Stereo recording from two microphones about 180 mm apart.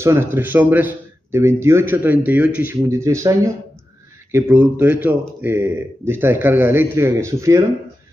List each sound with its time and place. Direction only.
0.0 s a man's voice: 15° right (ahead or behind)